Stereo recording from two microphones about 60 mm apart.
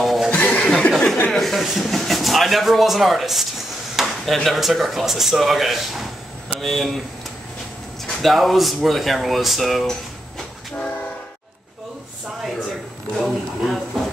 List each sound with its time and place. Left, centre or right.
0.0 s chuckle: centre
0.3 s chuckle: left
0.7 s chuckle: centre
1.3 s a sound: centre
4.5 s speech: centre
8.1 s speech: centre
13.2 s a sound: centre